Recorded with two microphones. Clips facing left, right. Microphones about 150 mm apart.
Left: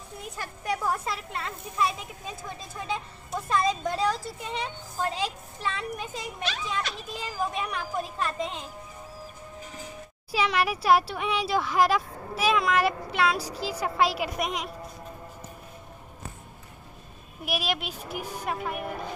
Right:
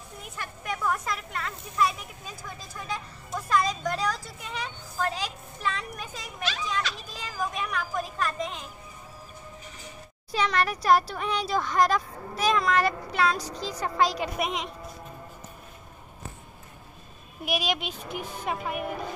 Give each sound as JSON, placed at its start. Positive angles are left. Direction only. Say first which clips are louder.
{"t": 0.4, "sound": "speech", "louder": "left 2 dB", "side_deg": 35}
{"t": 10.3, "sound": "speech", "louder": "even", "side_deg": 5}
{"t": 17.5, "sound": "speech", "louder": "right 1 dB", "side_deg": 0}